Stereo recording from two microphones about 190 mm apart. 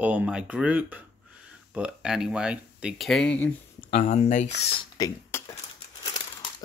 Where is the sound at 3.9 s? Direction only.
35° left (ahead or behind).